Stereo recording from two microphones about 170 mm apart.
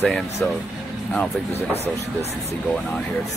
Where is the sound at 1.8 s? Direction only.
40° right (ahead or behind).